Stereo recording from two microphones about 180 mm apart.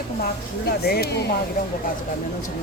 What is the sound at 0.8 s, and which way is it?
Speech, 60° left (ahead or behind).